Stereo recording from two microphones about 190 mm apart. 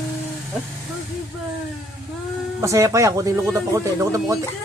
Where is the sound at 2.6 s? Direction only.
15° right (ahead or behind).